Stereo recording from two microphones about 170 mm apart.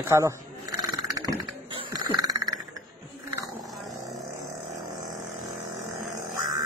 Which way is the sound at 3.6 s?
Centre (ahead or behind).